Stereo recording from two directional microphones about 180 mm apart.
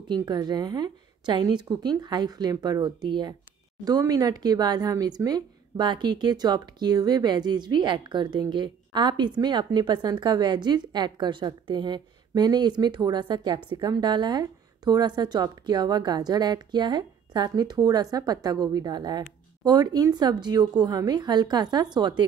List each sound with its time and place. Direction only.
0.1 s a woman's voice: 20° right (ahead or behind)